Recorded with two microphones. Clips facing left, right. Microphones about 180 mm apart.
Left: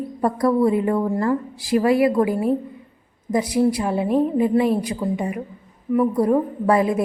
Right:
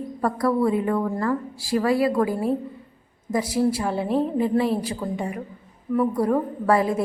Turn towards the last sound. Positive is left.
turn(degrees=20)  # may be behind; listen again after turning